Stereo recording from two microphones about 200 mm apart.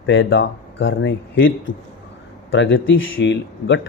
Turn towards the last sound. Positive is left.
turn(degrees=65)  # may be behind; listen again after turning